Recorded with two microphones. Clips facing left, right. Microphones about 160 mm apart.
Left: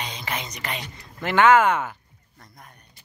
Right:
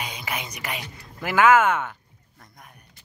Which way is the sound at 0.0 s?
10° right (ahead or behind).